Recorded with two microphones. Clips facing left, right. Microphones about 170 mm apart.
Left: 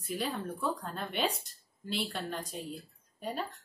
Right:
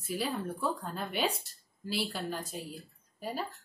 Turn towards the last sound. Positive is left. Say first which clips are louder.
# even
turn(degrees=-5)  # may be behind; listen again after turning